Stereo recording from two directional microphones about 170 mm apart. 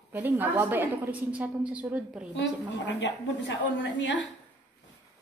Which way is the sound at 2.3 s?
90° left.